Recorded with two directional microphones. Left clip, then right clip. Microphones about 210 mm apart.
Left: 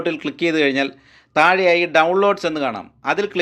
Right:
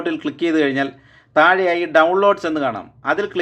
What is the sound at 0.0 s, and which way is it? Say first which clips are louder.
A man's voice: even; 30° left (ahead or behind).